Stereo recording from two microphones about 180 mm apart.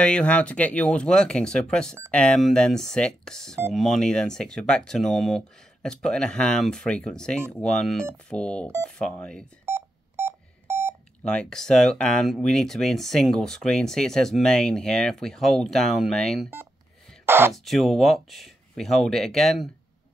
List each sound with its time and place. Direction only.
0.0 s speech: 5° left (ahead or behind)
9.7 s telephone dialing: 15° right (ahead or behind)
11.2 s speech: 5° left (ahead or behind)
17.3 s speech: 10° right (ahead or behind)
17.6 s speech: centre (ahead or behind)